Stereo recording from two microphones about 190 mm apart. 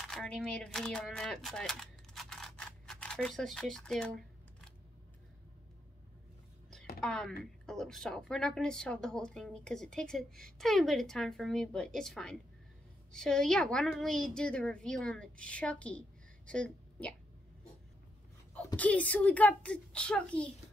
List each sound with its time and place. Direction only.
0.1 s speech: 5° left (ahead or behind)
7.0 s a woman's voice: 5° left (ahead or behind)
18.8 s a woman's voice: 10° left (ahead or behind)